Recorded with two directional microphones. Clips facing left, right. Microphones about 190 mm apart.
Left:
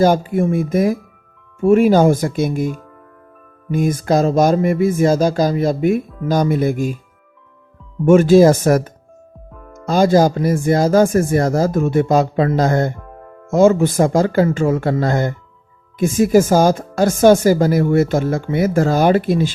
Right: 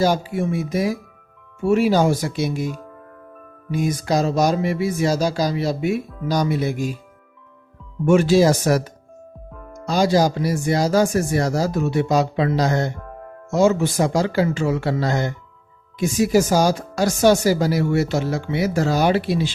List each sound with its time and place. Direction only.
0.0 s speech: 50° left (ahead or behind)
8.0 s speech: 50° left (ahead or behind)